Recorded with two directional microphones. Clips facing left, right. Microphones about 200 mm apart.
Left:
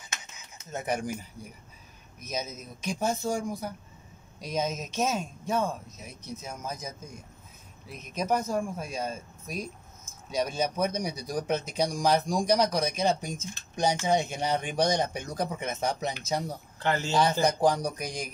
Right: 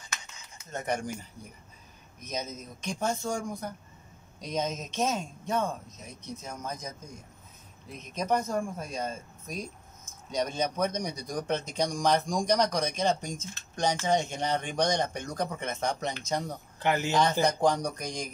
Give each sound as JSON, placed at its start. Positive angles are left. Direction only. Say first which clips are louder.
{"t": 0.7, "sound": "speech", "louder": "left 1 dB", "side_deg": 5}
{"t": 2.2, "sound": "speech", "louder": "left 1 dB", "side_deg": 5}
{"t": 8.0, "sound": "speech", "louder": "even", "side_deg": 5}
{"t": 16.8, "sound": "speech", "louder": "right 1 dB", "side_deg": -15}
{"t": 17.5, "sound": "speech", "louder": "left 1 dB", "side_deg": 5}